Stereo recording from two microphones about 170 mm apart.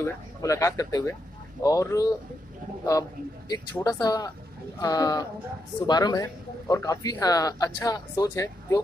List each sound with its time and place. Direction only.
0.0 s speech: 20° left (ahead or behind)